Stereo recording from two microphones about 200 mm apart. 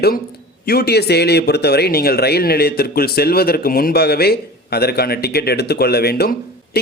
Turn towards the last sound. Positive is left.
turn(degrees=50)  # may be behind; listen again after turning